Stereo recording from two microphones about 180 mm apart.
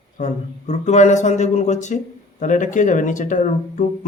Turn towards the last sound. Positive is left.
turn(degrees=45)  # may be behind; listen again after turning